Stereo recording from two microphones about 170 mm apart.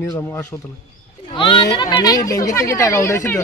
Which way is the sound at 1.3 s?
30° left (ahead or behind).